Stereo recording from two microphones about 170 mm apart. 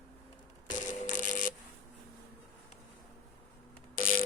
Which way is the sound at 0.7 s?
50° left (ahead or behind).